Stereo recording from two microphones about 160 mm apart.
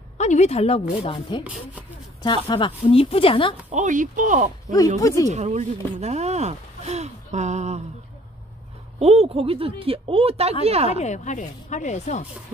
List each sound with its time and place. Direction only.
0.2 s speech: 45° left (ahead or behind)
1.4 s speech: 10° right (ahead or behind)
2.4 s speech: 30° left (ahead or behind)
3.7 s speech: 50° right (ahead or behind)
5.0 s speech: 20° left (ahead or behind)
5.3 s speech: 45° right (ahead or behind)
9.0 s speech: 40° right (ahead or behind)
11.0 s speech: 50° left (ahead or behind)